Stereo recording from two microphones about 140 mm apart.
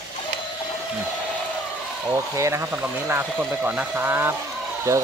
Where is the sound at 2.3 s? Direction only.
20° right (ahead or behind).